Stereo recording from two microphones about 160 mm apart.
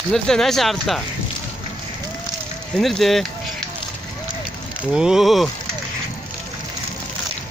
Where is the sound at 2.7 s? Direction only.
Centre (ahead or behind).